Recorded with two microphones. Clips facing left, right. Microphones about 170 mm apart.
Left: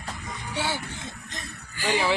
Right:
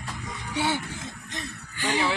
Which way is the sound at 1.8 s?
5° left (ahead or behind).